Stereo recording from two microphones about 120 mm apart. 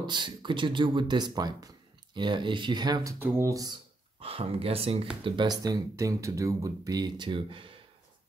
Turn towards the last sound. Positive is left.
turn(degrees=-45)  # may be behind; listen again after turning